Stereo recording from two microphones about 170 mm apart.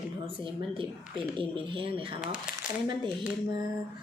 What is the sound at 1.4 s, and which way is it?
Speech, 30° right (ahead or behind).